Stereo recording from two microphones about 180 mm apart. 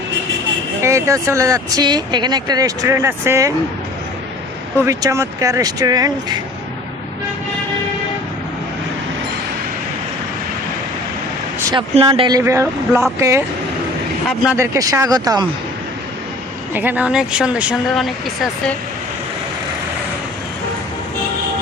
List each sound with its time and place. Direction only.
0.8 s speech: 15° right (ahead or behind)
4.8 s speech: 15° right (ahead or behind)
11.7 s speech: 30° right (ahead or behind)
12.5 s speech: 15° right (ahead or behind)
14.5 s speech: 15° right (ahead or behind)
16.7 s speech: 10° right (ahead or behind)